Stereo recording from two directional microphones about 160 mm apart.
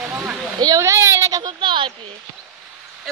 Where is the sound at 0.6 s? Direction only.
20° right (ahead or behind).